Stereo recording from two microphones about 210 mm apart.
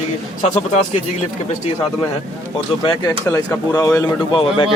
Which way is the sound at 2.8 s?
20° left (ahead or behind).